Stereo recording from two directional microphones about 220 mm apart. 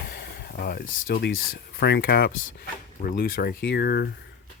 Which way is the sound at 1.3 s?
70° left (ahead or behind).